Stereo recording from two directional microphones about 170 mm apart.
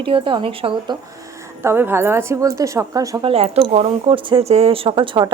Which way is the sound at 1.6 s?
15° right (ahead or behind).